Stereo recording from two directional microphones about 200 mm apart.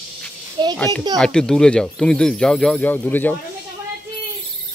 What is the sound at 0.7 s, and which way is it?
A child's voice, 10° left (ahead or behind).